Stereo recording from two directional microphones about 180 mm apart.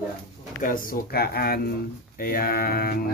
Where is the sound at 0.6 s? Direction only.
50° left (ahead or behind).